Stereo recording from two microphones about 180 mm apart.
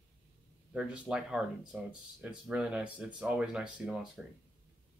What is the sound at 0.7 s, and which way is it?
Speech, 5° right (ahead or behind).